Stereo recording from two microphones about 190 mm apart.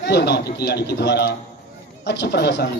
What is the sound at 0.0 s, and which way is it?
A man's voice, 60° left (ahead or behind).